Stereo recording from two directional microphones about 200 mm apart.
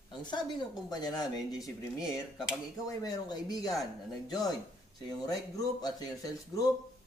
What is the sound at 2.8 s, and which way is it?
Speech, 15° left (ahead or behind).